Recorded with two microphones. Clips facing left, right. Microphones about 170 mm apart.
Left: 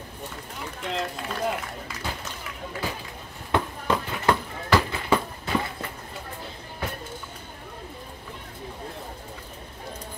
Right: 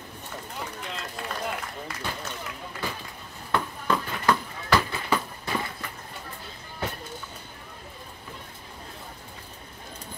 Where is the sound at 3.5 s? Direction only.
25° left (ahead or behind).